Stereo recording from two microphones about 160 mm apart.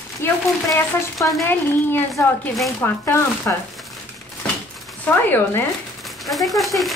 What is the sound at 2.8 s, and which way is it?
Speech, 15° left (ahead or behind).